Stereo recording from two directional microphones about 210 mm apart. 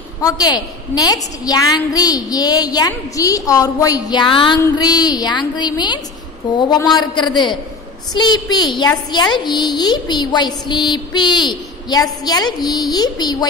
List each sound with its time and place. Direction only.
0.2 s a woman's voice: 20° left (ahead or behind)